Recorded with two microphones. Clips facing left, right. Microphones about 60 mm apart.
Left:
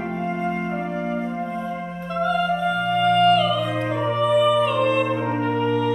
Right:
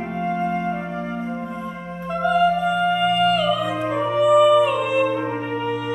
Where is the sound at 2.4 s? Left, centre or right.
Centre.